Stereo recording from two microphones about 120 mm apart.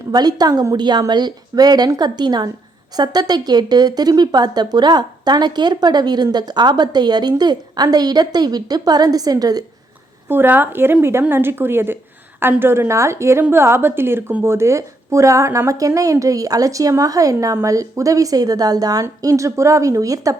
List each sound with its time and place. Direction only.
0.1 s a woman's voice: 35° right (ahead or behind)
10.2 s a woman's voice: 15° right (ahead or behind)